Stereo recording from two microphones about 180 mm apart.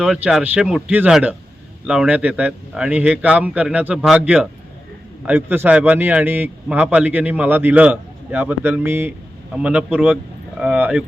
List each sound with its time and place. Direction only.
0.0 s a man's voice: 5° right (ahead or behind)